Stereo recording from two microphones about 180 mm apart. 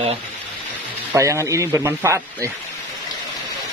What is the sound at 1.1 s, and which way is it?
A man's voice, 15° right (ahead or behind).